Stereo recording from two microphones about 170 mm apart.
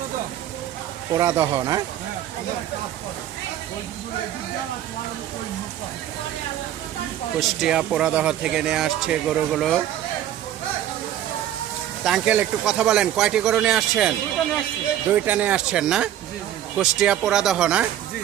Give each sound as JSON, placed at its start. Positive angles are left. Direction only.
{"t": 1.2, "sound": "speech", "side_deg": -20}
{"t": 7.3, "sound": "speech", "side_deg": -5}
{"t": 12.0, "sound": "speech", "side_deg": -5}
{"t": 15.1, "sound": "speech", "side_deg": -10}